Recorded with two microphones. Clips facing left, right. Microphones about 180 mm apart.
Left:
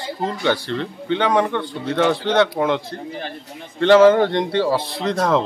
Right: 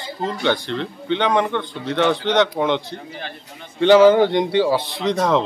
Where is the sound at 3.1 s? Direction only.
35° left (ahead or behind).